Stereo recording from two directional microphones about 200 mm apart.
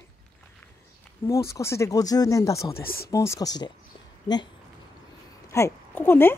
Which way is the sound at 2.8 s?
50° left (ahead or behind).